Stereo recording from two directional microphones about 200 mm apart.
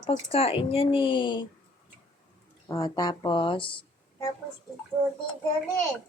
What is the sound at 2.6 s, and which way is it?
Speech, 15° left (ahead or behind).